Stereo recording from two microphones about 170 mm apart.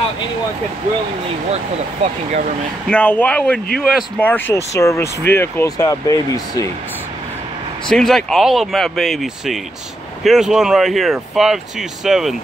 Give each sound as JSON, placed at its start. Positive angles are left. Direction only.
{"t": 2.9, "sound": "speech", "side_deg": 10}
{"t": 7.9, "sound": "speech", "side_deg": 0}